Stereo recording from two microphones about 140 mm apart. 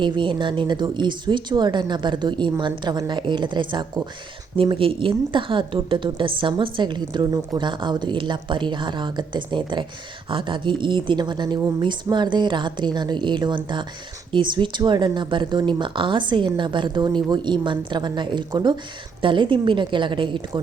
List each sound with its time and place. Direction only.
0.0 s a woman's voice: 35° right (ahead or behind)